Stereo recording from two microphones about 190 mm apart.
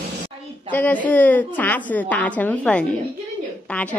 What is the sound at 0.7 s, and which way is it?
A woman's voice, 10° left (ahead or behind).